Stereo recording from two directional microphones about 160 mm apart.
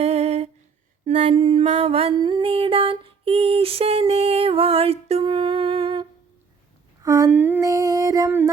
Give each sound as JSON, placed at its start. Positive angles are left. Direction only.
{"t": 0.0, "sound": "humming", "side_deg": -40}
{"t": 1.0, "sound": "mantra", "side_deg": -40}
{"t": 7.0, "sound": "a sound", "side_deg": -20}